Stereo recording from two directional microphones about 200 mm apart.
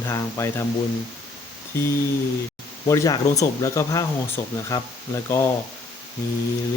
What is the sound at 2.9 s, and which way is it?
Speech, 15° left (ahead or behind).